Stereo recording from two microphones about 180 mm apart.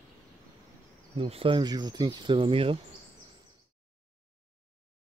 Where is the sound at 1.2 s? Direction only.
30° right (ahead or behind).